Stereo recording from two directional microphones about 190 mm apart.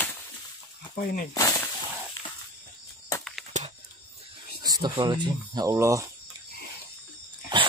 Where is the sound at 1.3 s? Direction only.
20° left (ahead or behind).